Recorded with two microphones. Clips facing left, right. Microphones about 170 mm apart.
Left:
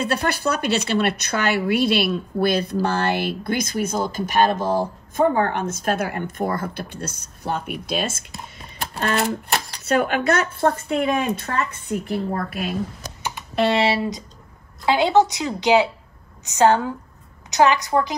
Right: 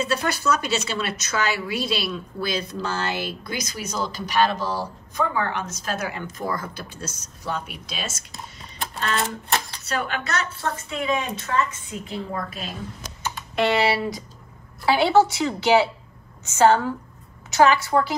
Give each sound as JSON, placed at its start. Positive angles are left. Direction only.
{"t": 0.0, "sound": "a woman's voice", "side_deg": 60}
{"t": 9.8, "sound": "a woman's voice", "side_deg": 50}
{"t": 13.7, "sound": "speech", "side_deg": 25}